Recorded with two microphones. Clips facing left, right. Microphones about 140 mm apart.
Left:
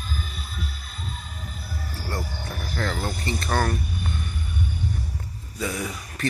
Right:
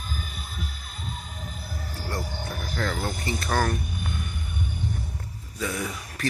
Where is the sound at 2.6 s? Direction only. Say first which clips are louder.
Left 1 dB; centre (ahead or behind).